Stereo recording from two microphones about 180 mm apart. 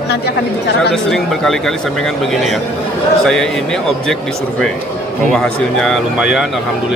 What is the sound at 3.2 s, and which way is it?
Speech, 5° left (ahead or behind).